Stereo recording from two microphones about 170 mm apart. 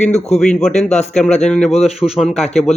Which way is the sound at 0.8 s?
40° left (ahead or behind).